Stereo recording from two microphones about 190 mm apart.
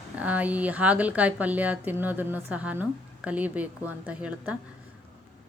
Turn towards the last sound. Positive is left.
turn(degrees=-5)  # may be behind; listen again after turning